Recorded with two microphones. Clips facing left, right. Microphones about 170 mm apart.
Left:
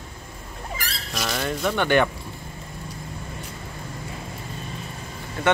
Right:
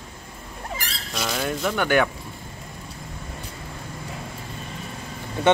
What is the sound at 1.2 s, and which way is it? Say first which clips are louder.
Speech: even; 5° right (ahead or behind).